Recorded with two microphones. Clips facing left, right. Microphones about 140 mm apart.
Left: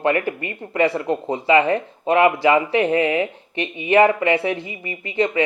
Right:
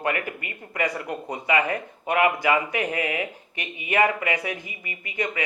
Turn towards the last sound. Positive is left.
turn(degrees=25)  # may be behind; listen again after turning